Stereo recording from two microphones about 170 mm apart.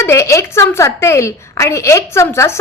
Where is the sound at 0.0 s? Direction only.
15° left (ahead or behind).